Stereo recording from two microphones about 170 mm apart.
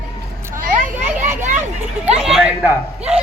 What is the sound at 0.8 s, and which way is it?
Children playing, 45° right (ahead or behind).